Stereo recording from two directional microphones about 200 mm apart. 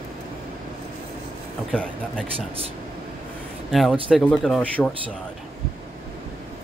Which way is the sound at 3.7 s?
Centre (ahead or behind).